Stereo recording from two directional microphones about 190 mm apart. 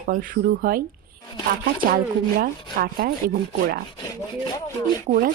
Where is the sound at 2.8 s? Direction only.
50° right (ahead or behind).